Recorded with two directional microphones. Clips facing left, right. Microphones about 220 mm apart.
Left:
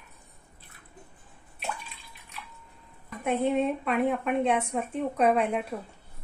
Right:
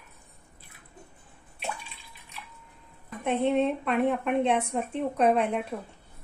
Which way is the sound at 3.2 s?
5° left (ahead or behind).